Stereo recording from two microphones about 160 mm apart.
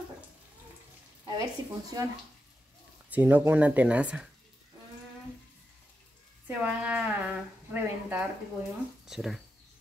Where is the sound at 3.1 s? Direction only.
10° right (ahead or behind).